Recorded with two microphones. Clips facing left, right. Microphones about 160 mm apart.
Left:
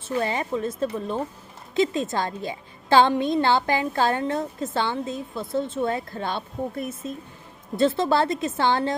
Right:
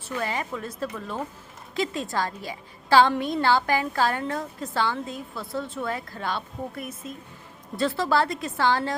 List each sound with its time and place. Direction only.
0.0 s a woman's voice: 25° left (ahead or behind)